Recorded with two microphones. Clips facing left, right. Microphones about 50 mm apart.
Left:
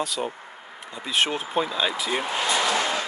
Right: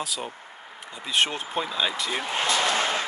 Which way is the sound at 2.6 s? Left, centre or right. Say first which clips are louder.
Left 1 dB; right.